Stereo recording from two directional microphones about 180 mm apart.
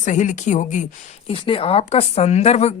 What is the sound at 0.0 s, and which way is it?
Speech, 45° left (ahead or behind).